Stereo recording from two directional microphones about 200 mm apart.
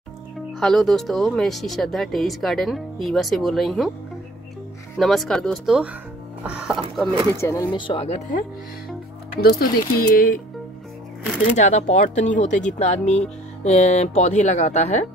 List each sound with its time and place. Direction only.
0.6 s speech: centre (ahead or behind)
4.9 s speech: centre (ahead or behind)
7.3 s speech: 15° left (ahead or behind)
7.7 s speech: 25° left (ahead or behind)
9.4 s speech: 50° left (ahead or behind)
11.5 s speech: 35° left (ahead or behind)